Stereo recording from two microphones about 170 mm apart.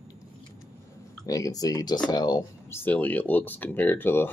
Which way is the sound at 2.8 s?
10° left (ahead or behind).